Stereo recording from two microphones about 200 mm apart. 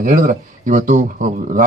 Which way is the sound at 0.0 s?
40° right (ahead or behind).